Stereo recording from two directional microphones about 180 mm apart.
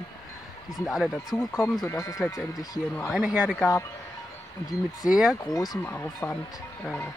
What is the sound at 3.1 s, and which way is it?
Speech, 5° right (ahead or behind).